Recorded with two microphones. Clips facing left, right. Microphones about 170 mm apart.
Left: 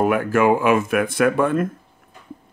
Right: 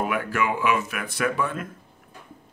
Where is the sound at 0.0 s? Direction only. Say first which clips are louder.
Left 8 dB; 45° left (ahead or behind).